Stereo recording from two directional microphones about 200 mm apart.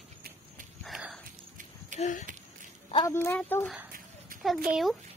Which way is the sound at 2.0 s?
35° left (ahead or behind).